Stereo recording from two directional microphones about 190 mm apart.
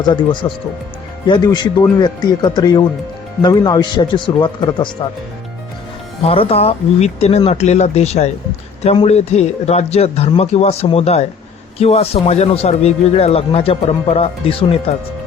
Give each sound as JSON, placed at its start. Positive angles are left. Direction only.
{"t": 0.0, "sound": "speech", "side_deg": 25}
{"t": 6.2, "sound": "a man's voice", "side_deg": 30}